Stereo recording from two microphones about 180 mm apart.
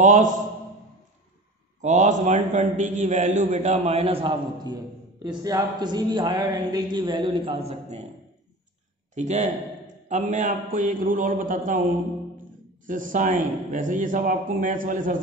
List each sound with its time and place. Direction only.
0.0 s a man's voice: 45° right (ahead or behind)
1.8 s a man's voice: 40° right (ahead or behind)
9.1 s a man's voice: 40° right (ahead or behind)
12.8 s a man's voice: 50° right (ahead or behind)